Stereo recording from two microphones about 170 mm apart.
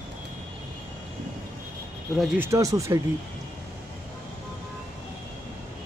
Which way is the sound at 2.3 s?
15° right (ahead or behind).